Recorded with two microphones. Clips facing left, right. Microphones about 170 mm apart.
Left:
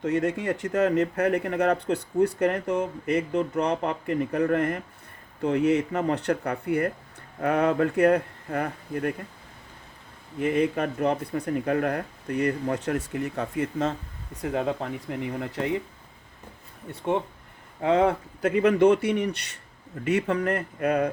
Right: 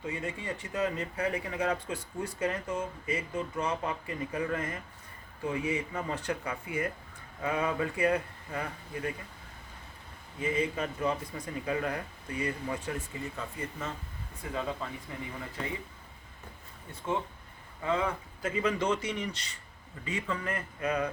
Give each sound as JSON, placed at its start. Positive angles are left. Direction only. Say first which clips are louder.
{"t": 0.0, "sound": "speech", "louder": "left 11 dB", "side_deg": 75}
{"t": 10.4, "sound": "speech", "louder": "left 7 dB", "side_deg": 60}
{"t": 14.4, "sound": "speech", "louder": "left 8 dB", "side_deg": 65}
{"t": 16.9, "sound": "speech", "louder": "left 7 dB", "side_deg": 65}